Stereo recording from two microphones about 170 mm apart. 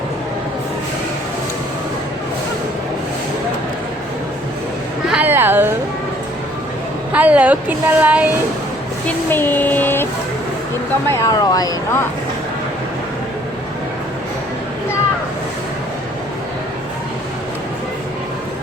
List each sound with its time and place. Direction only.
5.0 s a sound: 10° right (ahead or behind)
7.1 s a woman's voice: 10° right (ahead or behind)
9.0 s speech: 10° left (ahead or behind)
11.1 s speech: 20° left (ahead or behind)